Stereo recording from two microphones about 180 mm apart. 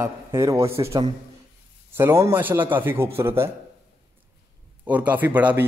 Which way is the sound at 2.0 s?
15° right (ahead or behind).